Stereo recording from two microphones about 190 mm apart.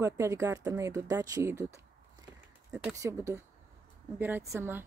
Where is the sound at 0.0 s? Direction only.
15° right (ahead or behind).